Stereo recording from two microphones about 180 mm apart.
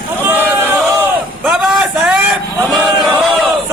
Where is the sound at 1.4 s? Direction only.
Centre (ahead or behind).